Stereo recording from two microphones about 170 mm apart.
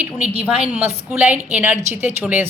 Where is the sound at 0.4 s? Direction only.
5° right (ahead or behind).